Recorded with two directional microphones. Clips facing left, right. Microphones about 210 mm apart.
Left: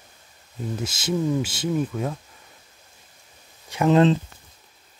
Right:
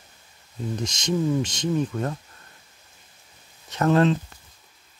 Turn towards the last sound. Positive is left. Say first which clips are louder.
# left 2 dB
turn(degrees=15)  # may be behind; listen again after turning